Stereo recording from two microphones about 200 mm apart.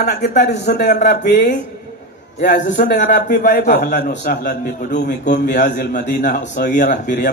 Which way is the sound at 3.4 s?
45° left (ahead or behind).